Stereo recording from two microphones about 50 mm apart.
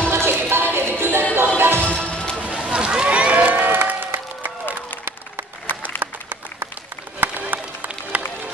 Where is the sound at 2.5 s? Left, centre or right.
Centre.